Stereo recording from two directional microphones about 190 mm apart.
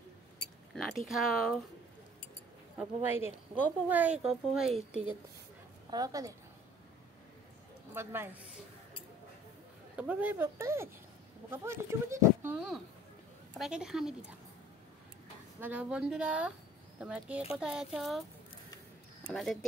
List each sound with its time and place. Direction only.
0.7 s speech: centre (ahead or behind)
2.8 s speech: 10° right (ahead or behind)
5.9 s a woman's voice: 20° right (ahead or behind)
7.9 s speech: 10° right (ahead or behind)
9.9 s speech: 10° right (ahead or behind)
15.6 s speech: 5° right (ahead or behind)
19.2 s speech: centre (ahead or behind)